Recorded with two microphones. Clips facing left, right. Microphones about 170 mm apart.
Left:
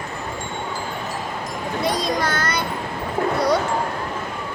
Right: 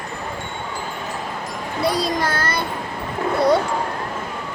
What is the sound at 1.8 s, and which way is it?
Speech, 30° right (ahead or behind).